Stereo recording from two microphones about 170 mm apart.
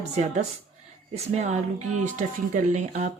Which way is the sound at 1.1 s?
40° right (ahead or behind).